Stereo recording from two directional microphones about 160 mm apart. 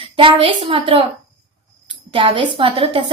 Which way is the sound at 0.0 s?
35° right (ahead or behind).